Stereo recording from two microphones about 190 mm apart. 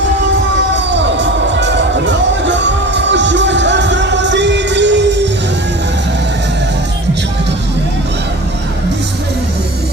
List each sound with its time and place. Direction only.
0.9 s music: 70° right (ahead or behind)